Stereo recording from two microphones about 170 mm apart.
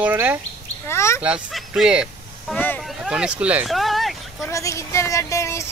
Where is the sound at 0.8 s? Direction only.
15° left (ahead or behind).